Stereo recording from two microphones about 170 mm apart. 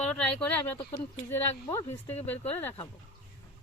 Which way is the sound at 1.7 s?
15° left (ahead or behind).